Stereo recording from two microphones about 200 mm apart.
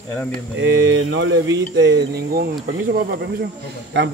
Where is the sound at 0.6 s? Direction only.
70° right (ahead or behind).